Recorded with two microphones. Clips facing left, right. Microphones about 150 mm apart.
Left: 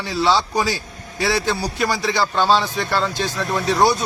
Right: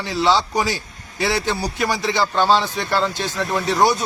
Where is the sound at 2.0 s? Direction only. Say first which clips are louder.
Right 1 dB; 15° right (ahead or behind).